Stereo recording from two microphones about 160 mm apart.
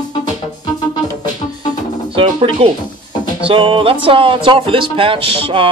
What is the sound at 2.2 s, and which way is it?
Music, 35° right (ahead or behind).